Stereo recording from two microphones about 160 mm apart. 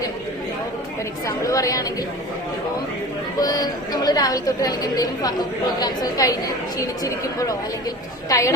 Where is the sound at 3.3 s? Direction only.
25° left (ahead or behind).